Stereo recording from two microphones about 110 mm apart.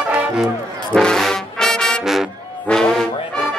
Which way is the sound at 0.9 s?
5° left (ahead or behind).